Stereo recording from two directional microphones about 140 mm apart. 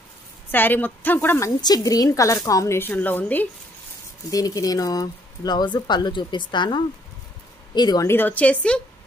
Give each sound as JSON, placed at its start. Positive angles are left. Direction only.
{"t": 0.5, "sound": "a woman's voice", "side_deg": 15}
{"t": 1.6, "sound": "speech", "side_deg": 25}
{"t": 4.3, "sound": "speech", "side_deg": 25}
{"t": 8.1, "sound": "a woman's voice", "side_deg": 15}